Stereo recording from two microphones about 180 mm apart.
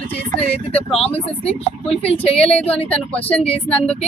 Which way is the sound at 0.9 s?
35° left (ahead or behind).